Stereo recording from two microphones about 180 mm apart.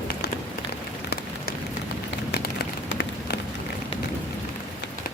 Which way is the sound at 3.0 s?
65° left (ahead or behind).